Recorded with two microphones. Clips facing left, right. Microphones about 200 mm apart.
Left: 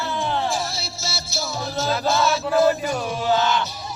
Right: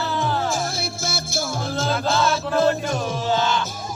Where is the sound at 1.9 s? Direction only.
5° left (ahead or behind).